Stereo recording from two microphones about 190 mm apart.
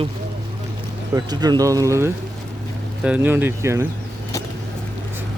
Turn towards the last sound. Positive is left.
turn(degrees=-15)  # may be behind; listen again after turning